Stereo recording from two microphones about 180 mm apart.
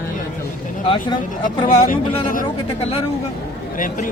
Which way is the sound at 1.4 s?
50° left (ahead or behind).